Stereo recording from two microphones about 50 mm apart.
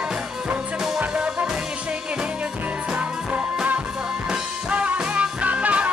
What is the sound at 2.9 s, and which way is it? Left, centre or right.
Music, right.